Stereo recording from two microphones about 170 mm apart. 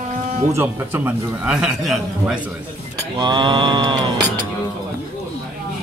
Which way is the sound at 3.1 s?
25° right (ahead or behind).